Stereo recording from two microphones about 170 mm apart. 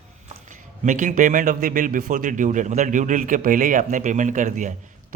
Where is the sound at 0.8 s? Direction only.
50° right (ahead or behind).